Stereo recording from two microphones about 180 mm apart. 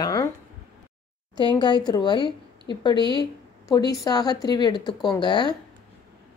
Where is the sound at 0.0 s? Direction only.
20° left (ahead or behind).